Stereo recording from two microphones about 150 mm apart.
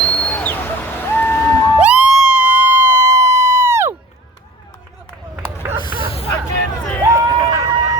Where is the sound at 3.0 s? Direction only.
25° right (ahead or behind).